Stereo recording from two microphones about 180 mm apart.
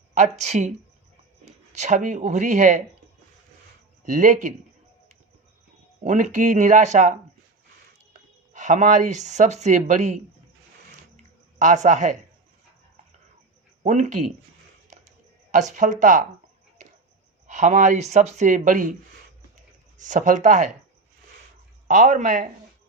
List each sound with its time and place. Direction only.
0.1 s speech: 40° right (ahead or behind)
4.0 s speech: 45° right (ahead or behind)
6.1 s speech: 45° right (ahead or behind)
11.6 s speech: 40° right (ahead or behind)
13.8 s speech: 40° right (ahead or behind)
15.7 s speech: 45° right (ahead or behind)
17.4 s speech: 40° right (ahead or behind)
20.0 s speech: 45° right (ahead or behind)
21.8 s speech: 50° right (ahead or behind)